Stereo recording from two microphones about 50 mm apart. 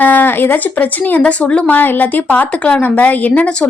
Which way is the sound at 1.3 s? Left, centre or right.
Left.